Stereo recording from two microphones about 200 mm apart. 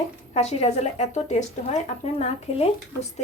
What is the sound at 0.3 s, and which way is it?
Speech, 35° left (ahead or behind).